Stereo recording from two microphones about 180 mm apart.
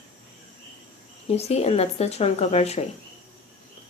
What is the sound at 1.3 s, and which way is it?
A woman's voice, 35° left (ahead or behind).